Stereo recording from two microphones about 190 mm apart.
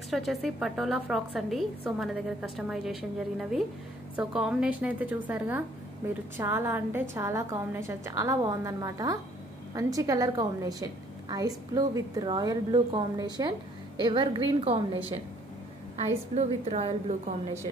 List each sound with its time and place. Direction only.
0.1 s a woman's voice: centre (ahead or behind); by 14.8 s 25° right (ahead or behind)
16.3 s a woman's voice: 35° right (ahead or behind)